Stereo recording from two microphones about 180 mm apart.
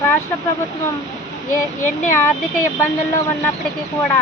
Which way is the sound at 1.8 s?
45° left (ahead or behind).